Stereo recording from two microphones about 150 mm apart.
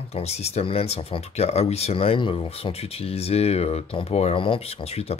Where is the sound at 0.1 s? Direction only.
45° left (ahead or behind).